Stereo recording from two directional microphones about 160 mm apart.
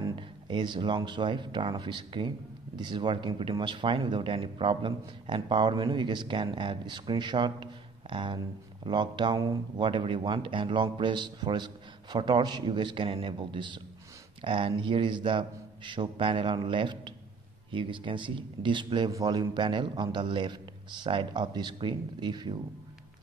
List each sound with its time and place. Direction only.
0.0 s a man's voice: 30° right (ahead or behind)